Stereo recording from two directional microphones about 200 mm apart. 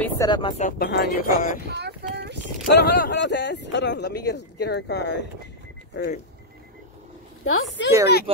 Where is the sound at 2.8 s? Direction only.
55° left (ahead or behind).